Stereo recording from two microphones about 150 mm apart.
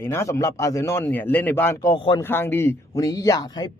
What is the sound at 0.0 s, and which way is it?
A man's voice, 15° left (ahead or behind).